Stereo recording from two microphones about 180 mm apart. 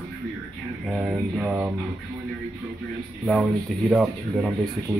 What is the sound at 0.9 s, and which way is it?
Speech, 5° right (ahead or behind).